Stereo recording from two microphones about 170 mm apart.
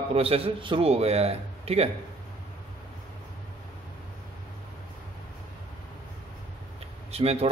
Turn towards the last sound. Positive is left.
turn(degrees=-35)  # may be behind; listen again after turning